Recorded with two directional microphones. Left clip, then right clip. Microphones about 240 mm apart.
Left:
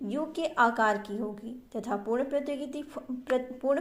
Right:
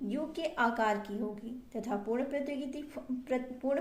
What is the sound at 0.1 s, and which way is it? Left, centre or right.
A woman's voice, left.